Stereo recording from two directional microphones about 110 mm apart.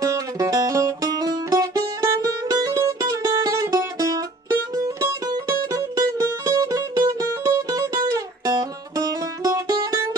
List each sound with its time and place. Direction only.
0.0 s music: 30° right (ahead or behind)